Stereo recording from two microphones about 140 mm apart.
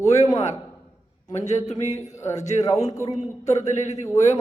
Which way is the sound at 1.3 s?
55° left (ahead or behind).